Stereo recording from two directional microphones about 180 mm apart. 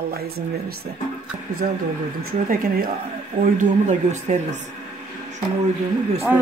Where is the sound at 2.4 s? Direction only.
55° right (ahead or behind).